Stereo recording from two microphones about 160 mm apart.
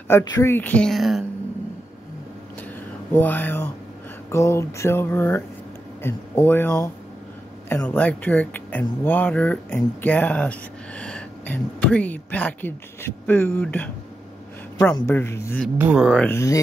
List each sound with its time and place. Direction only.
0.1 s speech: 20° left (ahead or behind); by 1.2 s centre (ahead or behind)
3.1 s speech: 10° left (ahead or behind)
15.1 s speech: 15° left (ahead or behind)
15.8 s speech: 10° right (ahead or behind)
16.1 s speech: 10° left (ahead or behind)